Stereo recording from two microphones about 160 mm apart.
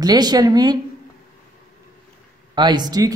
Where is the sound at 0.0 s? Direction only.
25° right (ahead or behind).